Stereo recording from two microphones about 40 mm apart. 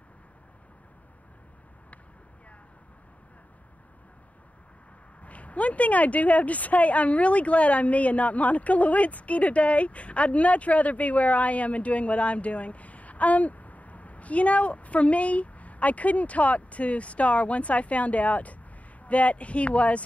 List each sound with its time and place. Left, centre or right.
5.2 s speech: left